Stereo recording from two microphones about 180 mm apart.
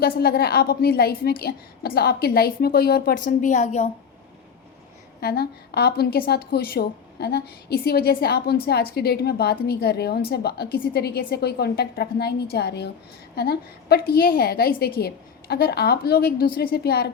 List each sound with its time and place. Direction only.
0.0 s a woman's voice: 60° left (ahead or behind); by 3.8 s 40° left (ahead or behind)
5.2 s a woman's voice: 60° left (ahead or behind)